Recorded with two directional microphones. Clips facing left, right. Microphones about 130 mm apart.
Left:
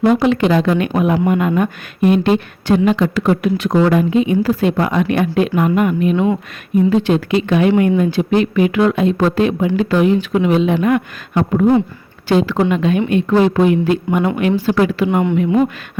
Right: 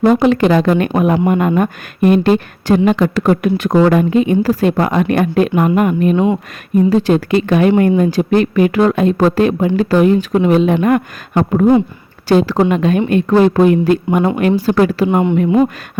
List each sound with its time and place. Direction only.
0.0 s speech: 45° right (ahead or behind)